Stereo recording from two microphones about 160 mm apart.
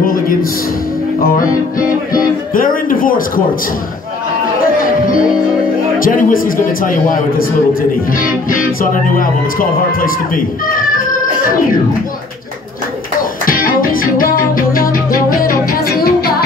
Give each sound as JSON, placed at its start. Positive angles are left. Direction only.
{"t": 0.0, "sound": "music", "side_deg": 60}
{"t": 1.8, "sound": "music", "side_deg": 60}
{"t": 5.9, "sound": "speech", "side_deg": 60}
{"t": 9.1, "sound": "speech", "side_deg": 60}
{"t": 13.5, "sound": "music", "side_deg": 60}